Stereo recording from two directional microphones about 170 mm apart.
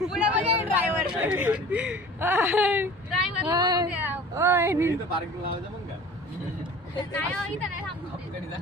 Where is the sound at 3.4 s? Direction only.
20° right (ahead or behind).